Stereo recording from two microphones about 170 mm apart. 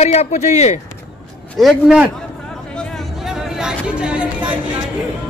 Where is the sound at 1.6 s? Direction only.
Centre (ahead or behind).